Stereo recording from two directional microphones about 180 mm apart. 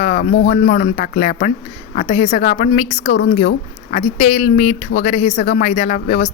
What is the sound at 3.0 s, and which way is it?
Speech, 70° left (ahead or behind).